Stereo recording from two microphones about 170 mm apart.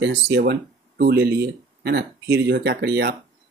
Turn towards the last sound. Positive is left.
turn(degrees=-75)  # may be behind; listen again after turning